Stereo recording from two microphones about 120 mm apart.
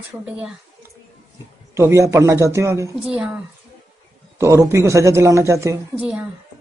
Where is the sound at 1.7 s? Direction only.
25° right (ahead or behind).